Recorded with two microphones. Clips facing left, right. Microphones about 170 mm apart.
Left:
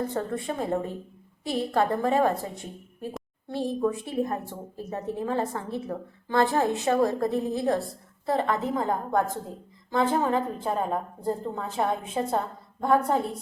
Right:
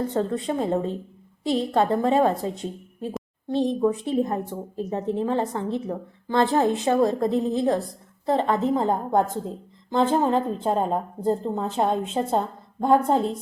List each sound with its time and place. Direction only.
0.1 s a woman's voice: 20° right (ahead or behind)